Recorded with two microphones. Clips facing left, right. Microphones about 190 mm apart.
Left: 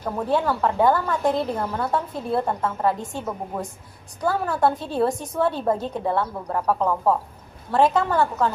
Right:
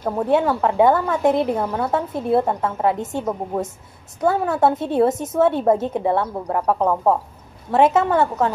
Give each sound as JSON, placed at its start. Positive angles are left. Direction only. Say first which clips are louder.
{"t": 0.0, "sound": "a woman's voice", "louder": "right 4 dB", "side_deg": -25}